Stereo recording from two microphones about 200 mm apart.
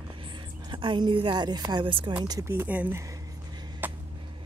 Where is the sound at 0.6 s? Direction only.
25° right (ahead or behind).